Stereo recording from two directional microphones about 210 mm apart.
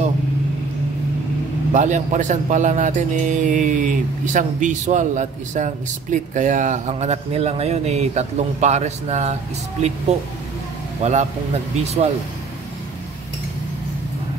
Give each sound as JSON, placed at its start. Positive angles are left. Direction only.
{"t": 1.7, "sound": "speech", "side_deg": -35}